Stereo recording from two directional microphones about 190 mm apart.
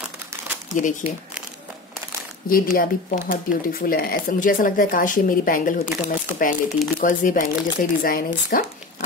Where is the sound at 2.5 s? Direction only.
50° left (ahead or behind).